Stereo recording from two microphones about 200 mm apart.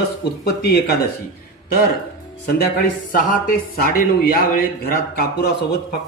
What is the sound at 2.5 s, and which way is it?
A man's voice, 50° left (ahead or behind).